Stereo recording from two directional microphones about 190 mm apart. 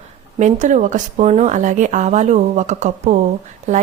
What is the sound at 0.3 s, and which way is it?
A woman's voice, 40° right (ahead or behind).